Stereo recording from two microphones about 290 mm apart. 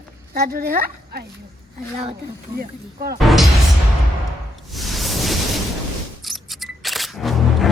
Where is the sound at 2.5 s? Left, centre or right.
Right.